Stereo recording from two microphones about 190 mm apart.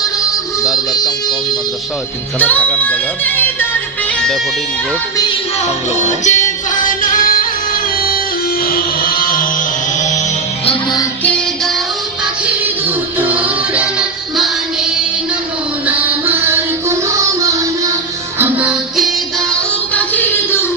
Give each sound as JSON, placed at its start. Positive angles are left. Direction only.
{"t": 2.4, "sound": "speech", "side_deg": 5}
{"t": 5.9, "sound": "music", "side_deg": 40}
{"t": 8.7, "sound": "music", "side_deg": 50}
{"t": 10.1, "sound": "music", "side_deg": 30}
{"t": 11.2, "sound": "music", "side_deg": 5}
{"t": 13.3, "sound": "music", "side_deg": -5}
{"t": 15.9, "sound": "music", "side_deg": -10}
{"t": 18.4, "sound": "music", "side_deg": -5}
{"t": 19.9, "sound": "music", "side_deg": 10}